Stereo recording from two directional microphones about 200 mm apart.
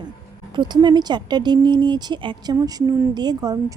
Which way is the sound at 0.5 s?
20° right (ahead or behind).